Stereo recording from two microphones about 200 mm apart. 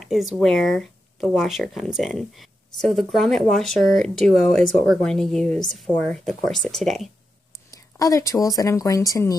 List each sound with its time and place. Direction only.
0.0 s speech: centre (ahead or behind)
7.7 s speech: 15° left (ahead or behind)